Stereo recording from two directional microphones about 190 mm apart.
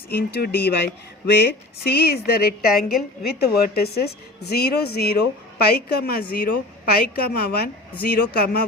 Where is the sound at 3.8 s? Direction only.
55° left (ahead or behind).